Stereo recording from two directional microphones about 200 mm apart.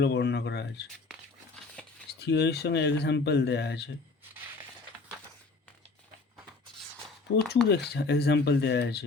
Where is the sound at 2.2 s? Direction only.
60° left (ahead or behind).